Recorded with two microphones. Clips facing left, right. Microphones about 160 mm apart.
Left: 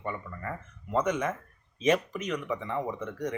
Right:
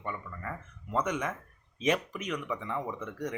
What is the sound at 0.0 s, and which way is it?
Speech, centre (ahead or behind).